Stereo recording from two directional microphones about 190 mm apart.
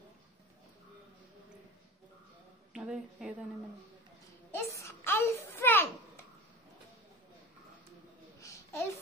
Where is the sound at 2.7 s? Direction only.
5° right (ahead or behind).